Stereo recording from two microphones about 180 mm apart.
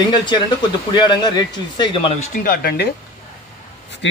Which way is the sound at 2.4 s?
60° left (ahead or behind).